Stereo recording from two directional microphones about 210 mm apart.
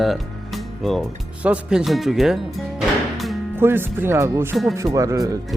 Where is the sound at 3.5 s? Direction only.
10° right (ahead or behind).